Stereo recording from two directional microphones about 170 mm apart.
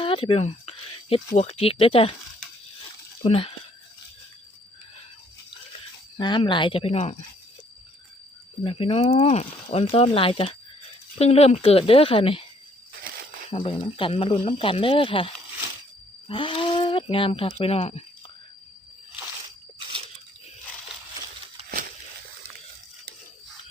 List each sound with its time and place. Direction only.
0.0 s a sound: 30° left (ahead or behind)
1.4 s speech: 35° left (ahead or behind)
3.2 s speech: 35° left (ahead or behind)
6.1 s speech: 25° left (ahead or behind)
8.6 s speech: 30° left (ahead or behind)
13.1 s a sound: 55° right (ahead or behind)
13.5 s speech: 35° left (ahead or behind)